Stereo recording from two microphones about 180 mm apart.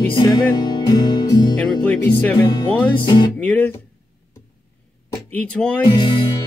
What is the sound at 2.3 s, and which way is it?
Music, 20° left (ahead or behind).